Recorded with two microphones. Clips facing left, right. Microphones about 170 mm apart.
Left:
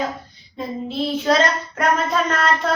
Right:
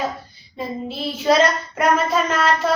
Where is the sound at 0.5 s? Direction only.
5° right (ahead or behind).